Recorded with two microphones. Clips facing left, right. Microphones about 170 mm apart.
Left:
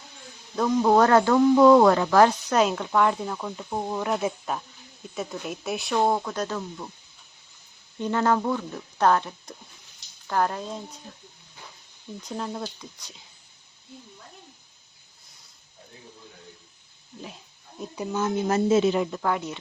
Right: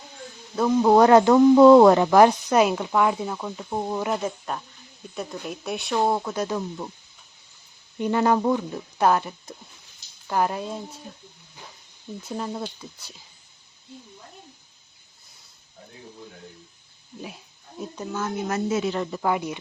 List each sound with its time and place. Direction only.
0.5 s speech: 5° right (ahead or behind)
4.2 s speech: 5° left (ahead or behind)
7.9 s speech: 10° right (ahead or behind)
12.2 s speech: 5° right (ahead or behind)
17.9 s speech: 15° left (ahead or behind)
19.1 s speech: 10° right (ahead or behind)